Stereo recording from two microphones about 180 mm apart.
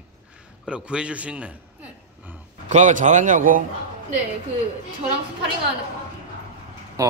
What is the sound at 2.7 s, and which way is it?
Speech, 40° right (ahead or behind).